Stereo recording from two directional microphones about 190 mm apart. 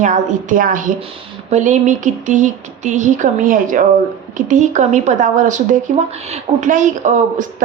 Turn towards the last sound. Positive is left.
turn(degrees=-40)  # may be behind; listen again after turning